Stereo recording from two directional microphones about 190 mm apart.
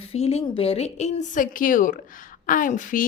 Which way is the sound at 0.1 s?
30° left (ahead or behind).